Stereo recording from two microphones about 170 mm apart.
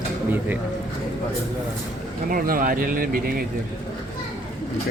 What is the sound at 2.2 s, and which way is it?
Speech, 55° right (ahead or behind).